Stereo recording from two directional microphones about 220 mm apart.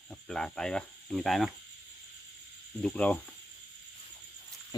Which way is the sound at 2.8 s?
5° left (ahead or behind).